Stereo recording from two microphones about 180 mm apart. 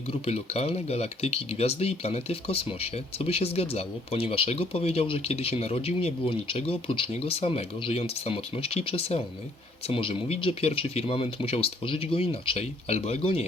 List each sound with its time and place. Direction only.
0.1 s speech: 35° left (ahead or behind)